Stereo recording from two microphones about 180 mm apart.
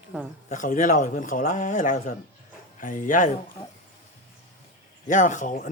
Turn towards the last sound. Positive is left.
turn(degrees=45)  # may be behind; listen again after turning